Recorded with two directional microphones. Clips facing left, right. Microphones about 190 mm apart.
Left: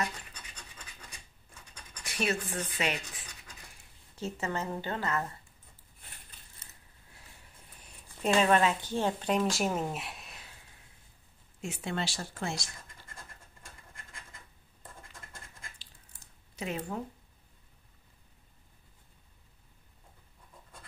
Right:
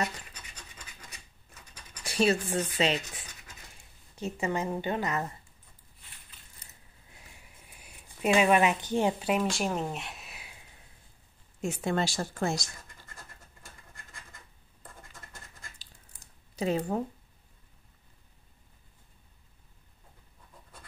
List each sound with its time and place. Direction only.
2.0 s speech: 30° right (ahead or behind)
4.2 s a woman's voice: 15° right (ahead or behind)
7.8 s speech: 10° right (ahead or behind)
11.6 s speech: 45° right (ahead or behind)
16.5 s speech: 35° right (ahead or behind)